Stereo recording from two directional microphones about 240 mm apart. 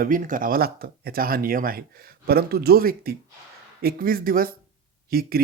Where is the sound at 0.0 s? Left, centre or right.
Right.